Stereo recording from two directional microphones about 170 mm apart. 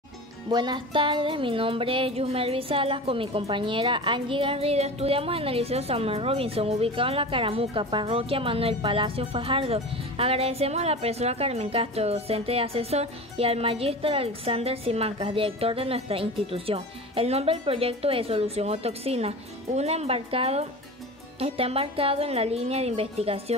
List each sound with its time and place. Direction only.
0.5 s music: 25° right (ahead or behind)